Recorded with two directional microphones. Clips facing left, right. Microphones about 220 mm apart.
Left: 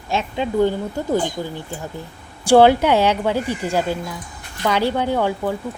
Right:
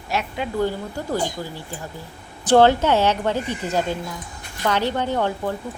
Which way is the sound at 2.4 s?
10° left (ahead or behind).